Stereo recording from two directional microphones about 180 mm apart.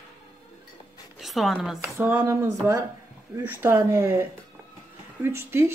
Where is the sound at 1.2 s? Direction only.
Centre (ahead or behind).